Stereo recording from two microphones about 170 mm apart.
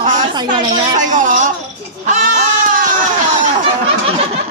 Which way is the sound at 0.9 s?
45° right (ahead or behind).